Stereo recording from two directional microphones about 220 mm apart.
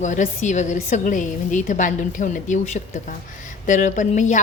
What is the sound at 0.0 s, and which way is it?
A woman's voice, 35° left (ahead or behind).